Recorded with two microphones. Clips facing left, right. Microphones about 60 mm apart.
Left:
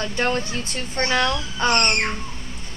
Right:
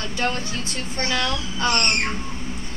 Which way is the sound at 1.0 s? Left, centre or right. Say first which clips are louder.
Left 4 dB; left.